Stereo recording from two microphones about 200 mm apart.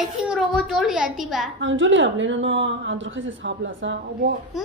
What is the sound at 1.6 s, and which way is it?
A woman's voice, 70° right (ahead or behind).